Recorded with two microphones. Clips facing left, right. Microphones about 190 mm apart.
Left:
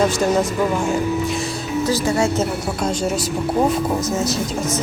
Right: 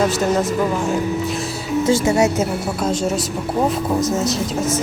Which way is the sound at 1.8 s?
25° right (ahead or behind).